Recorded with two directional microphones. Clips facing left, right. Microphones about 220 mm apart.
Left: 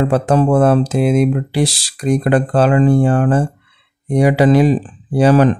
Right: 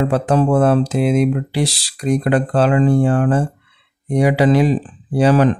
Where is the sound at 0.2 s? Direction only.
45° left (ahead or behind).